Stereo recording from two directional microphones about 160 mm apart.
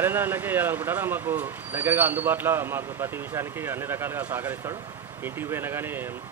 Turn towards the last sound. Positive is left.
turn(degrees=-15)  # may be behind; listen again after turning